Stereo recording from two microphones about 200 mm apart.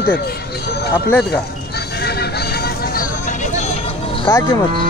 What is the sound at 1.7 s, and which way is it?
Vehicle, 55° left (ahead or behind).